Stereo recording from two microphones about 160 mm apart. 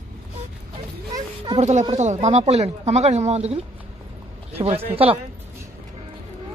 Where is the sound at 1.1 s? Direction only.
30° right (ahead or behind).